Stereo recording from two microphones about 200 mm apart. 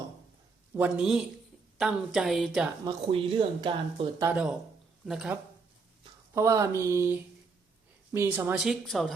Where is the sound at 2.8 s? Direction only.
25° right (ahead or behind).